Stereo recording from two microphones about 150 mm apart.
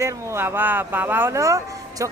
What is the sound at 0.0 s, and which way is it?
Speech, 15° right (ahead or behind).